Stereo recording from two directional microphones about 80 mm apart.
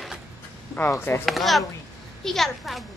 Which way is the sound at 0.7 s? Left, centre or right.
Left.